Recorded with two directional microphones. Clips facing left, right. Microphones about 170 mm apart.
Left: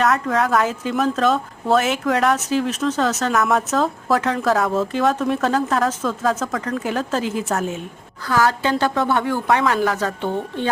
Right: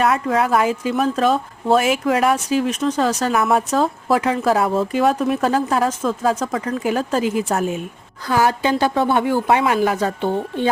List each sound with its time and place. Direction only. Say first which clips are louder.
0.0 s speech: right 1 dB; 10° right (ahead or behind)